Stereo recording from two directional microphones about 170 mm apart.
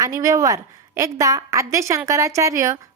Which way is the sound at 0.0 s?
20° right (ahead or behind).